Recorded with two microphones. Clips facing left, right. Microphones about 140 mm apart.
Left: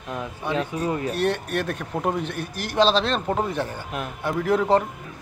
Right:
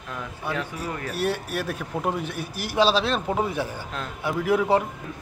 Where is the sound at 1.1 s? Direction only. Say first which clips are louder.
Left 3 dB; 5° right (ahead or behind).